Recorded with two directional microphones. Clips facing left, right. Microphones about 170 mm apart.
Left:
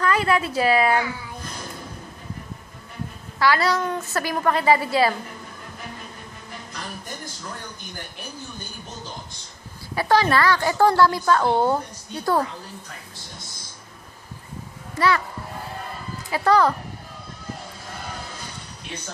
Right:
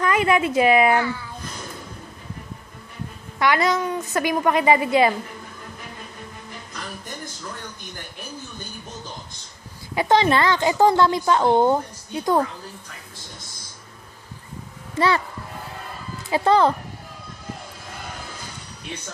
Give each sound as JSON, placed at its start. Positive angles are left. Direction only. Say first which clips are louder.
{"t": 0.0, "sound": "a woman's voice", "louder": "right 2 dB", "side_deg": -20}
{"t": 0.9, "sound": "speech", "louder": "right 2 dB", "side_deg": 15}
{"t": 3.3, "sound": "a woman's voice", "louder": "right 1 dB", "side_deg": -20}
{"t": 9.9, "sound": "a woman's voice", "louder": "right 1 dB", "side_deg": -20}
{"t": 15.0, "sound": "a woman's voice", "louder": "right 1 dB", "side_deg": -25}
{"t": 16.3, "sound": "a woman's voice", "louder": "right 1 dB", "side_deg": -25}